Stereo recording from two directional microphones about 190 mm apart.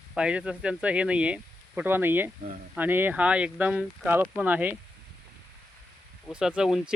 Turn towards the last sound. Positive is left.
turn(degrees=-5)  # may be behind; listen again after turning